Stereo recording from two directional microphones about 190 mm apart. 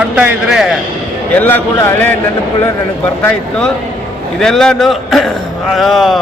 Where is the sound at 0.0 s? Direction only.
5° right (ahead or behind).